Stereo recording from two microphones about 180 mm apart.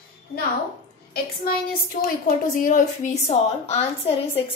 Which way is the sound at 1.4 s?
55° left (ahead or behind).